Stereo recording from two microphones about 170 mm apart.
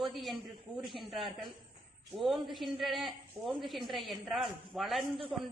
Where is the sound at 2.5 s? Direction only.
Centre (ahead or behind).